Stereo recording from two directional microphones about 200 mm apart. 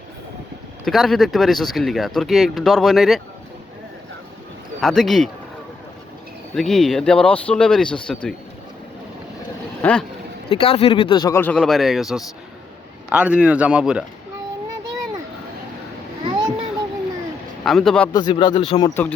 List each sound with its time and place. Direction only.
0.9 s speech: centre (ahead or behind)
4.8 s speech: centre (ahead or behind)
6.6 s speech: centre (ahead or behind)
9.8 s speech: 10° left (ahead or behind)
10.5 s speech: 30° left (ahead or behind); by 14.0 s 5° right (ahead or behind)
16.2 s a sound: 25° right (ahead or behind)
17.7 s speech: centre (ahead or behind)
18.1 s speech: 25° left (ahead or behind)